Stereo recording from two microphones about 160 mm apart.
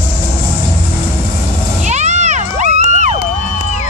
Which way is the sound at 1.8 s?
45° right (ahead or behind).